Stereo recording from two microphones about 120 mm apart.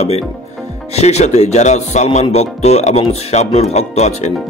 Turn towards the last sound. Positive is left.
turn(degrees=65)  # may be behind; listen again after turning